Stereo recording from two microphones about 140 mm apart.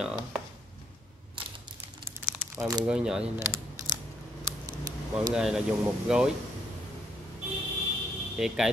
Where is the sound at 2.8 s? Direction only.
5° right (ahead or behind).